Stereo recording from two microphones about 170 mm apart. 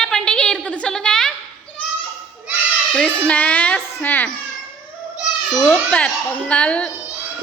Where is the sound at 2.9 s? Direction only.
5° left (ahead or behind).